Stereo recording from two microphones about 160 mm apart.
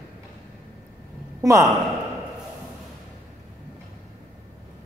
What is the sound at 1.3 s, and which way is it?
Speech, 20° right (ahead or behind).